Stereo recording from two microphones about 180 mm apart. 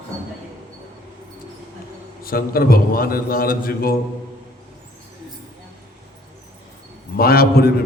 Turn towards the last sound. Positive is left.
turn(degrees=55)  # may be behind; listen again after turning